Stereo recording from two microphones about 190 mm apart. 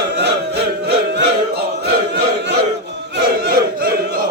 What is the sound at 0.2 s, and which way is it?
Chant, 60° right (ahead or behind).